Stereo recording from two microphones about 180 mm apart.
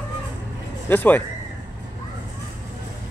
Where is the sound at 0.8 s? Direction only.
10° left (ahead or behind).